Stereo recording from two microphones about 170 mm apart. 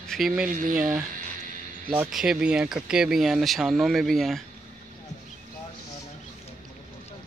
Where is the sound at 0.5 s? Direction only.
55° right (ahead or behind).